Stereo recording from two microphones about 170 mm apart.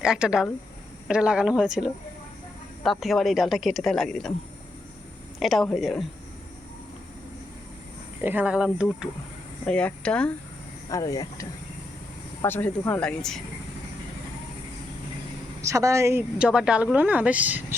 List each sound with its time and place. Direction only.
0.0 s speech: 5° right (ahead or behind)
5.4 s speech: centre (ahead or behind)
8.2 s a woman's voice: 10° right (ahead or behind)
9.6 s speech: 5° left (ahead or behind)
10.8 s speech: 20° left (ahead or behind); by 13.4 s 5° left (ahead or behind)
15.6 s a woman's voice: 20° right (ahead or behind)